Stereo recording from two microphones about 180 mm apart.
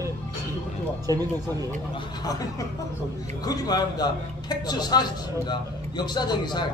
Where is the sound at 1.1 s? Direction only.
20° right (ahead or behind).